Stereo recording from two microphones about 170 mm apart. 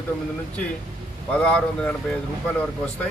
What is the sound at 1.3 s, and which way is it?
Speech, 5° left (ahead or behind).